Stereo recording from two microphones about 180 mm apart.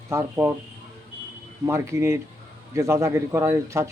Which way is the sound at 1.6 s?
15° right (ahead or behind).